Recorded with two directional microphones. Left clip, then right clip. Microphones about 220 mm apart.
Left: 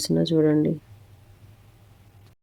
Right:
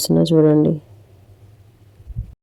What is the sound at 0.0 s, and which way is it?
Speech, 20° right (ahead or behind).